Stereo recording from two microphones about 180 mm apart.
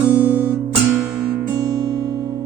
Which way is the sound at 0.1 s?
10° right (ahead or behind).